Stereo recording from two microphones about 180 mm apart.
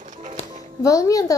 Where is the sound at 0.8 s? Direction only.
20° left (ahead or behind).